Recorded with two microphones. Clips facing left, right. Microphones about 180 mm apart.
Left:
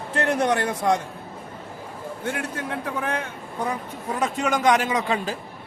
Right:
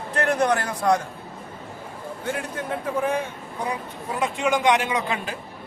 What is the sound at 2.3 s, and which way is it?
Speech, 70° left (ahead or behind).